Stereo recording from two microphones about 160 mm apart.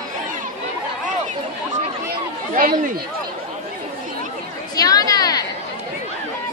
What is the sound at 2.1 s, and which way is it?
Chatter, 60° right (ahead or behind).